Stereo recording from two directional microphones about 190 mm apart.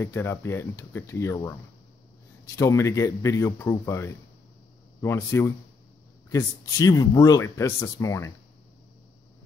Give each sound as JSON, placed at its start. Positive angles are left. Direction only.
{"t": 0.0, "sound": "speech", "side_deg": 15}